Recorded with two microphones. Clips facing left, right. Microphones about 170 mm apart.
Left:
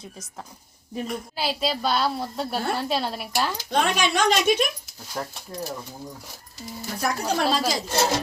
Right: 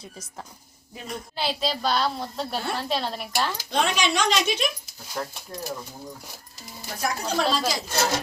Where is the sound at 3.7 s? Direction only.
50° left (ahead or behind).